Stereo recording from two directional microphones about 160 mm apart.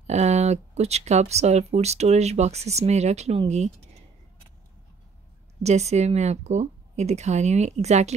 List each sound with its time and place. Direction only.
0.0 s speech: 45° right (ahead or behind)
5.6 s speech: 45° right (ahead or behind)